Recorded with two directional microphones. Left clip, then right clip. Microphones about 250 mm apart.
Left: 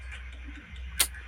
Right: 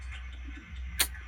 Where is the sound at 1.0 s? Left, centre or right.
Centre.